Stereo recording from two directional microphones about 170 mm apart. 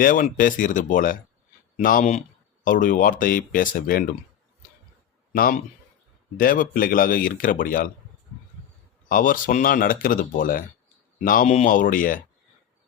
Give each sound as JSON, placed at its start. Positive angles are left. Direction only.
{"t": 0.0, "sound": "speech", "side_deg": 55}
{"t": 5.3, "sound": "speech", "side_deg": 55}
{"t": 9.0, "sound": "speech", "side_deg": 55}